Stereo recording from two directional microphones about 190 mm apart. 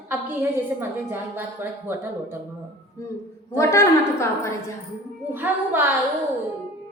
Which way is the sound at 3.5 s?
15° left (ahead or behind).